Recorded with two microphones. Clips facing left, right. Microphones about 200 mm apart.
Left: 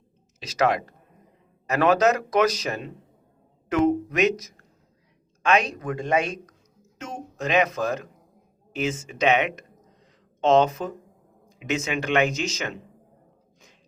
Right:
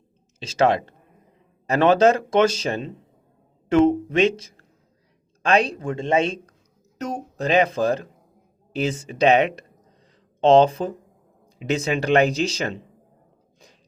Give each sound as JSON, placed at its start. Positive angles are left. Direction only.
{"t": 0.3, "sound": "speech", "side_deg": -30}